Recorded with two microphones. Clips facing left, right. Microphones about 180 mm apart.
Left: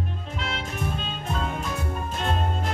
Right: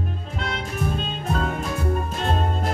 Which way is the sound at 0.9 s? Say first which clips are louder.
Right 4 dB; 40° right (ahead or behind).